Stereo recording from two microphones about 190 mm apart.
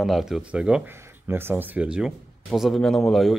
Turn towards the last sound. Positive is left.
turn(degrees=0)  # may be behind; listen again after turning